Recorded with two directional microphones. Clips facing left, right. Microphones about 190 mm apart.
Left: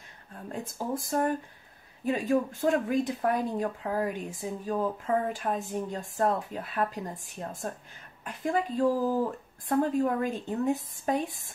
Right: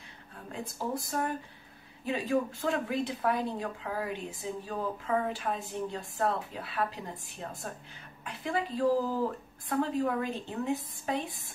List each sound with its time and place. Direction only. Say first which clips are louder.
0.5 s speech: left 2 dB; 45° left (ahead or behind)